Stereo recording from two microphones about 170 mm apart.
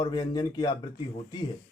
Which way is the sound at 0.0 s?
25° left (ahead or behind).